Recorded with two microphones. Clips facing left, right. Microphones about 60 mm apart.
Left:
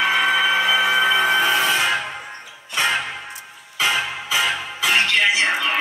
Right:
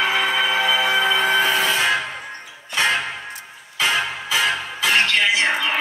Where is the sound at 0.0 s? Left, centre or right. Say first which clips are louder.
Left 2 dB; centre.